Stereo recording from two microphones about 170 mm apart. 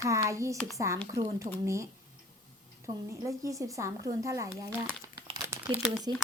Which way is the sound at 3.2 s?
20° right (ahead or behind).